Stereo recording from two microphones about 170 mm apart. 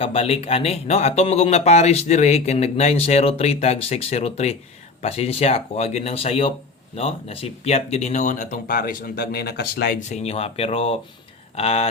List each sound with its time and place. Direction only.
0.0 s speech: 35° left (ahead or behind); by 10.0 s 65° left (ahead or behind)
10.0 s speech: 40° left (ahead or behind)